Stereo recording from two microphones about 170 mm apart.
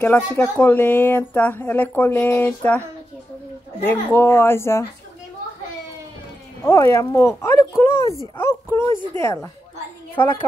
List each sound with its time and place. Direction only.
0.0 s speech: 10° left (ahead or behind)
3.8 s speech: 10° left (ahead or behind)
6.6 s speech: 15° left (ahead or behind)